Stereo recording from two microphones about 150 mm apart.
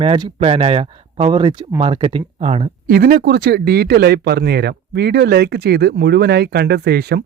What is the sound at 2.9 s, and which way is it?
Speech, 85° right.